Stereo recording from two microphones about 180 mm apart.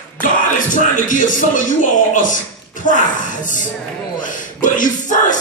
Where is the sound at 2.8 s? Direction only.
45° left (ahead or behind).